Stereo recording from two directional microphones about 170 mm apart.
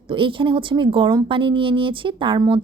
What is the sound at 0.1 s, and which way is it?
Speech, 30° right (ahead or behind).